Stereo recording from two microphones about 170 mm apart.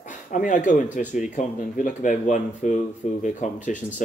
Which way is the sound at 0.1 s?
50° left (ahead or behind).